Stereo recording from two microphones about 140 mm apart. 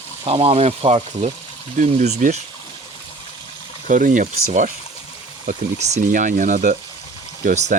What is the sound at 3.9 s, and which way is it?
Speech, 70° right (ahead or behind).